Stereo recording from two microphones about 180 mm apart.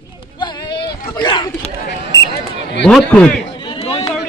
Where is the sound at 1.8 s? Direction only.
65° left (ahead or behind).